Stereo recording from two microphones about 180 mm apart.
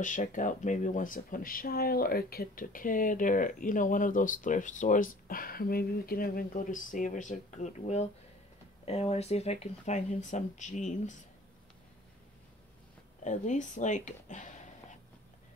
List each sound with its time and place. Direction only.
0.0 s speech: 45° left (ahead or behind)
13.2 s speech: 45° left (ahead or behind)